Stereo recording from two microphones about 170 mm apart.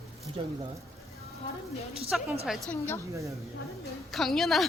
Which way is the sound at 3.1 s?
20° right (ahead or behind).